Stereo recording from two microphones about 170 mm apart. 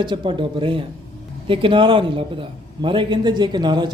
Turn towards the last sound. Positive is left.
turn(degrees=-25)  # may be behind; listen again after turning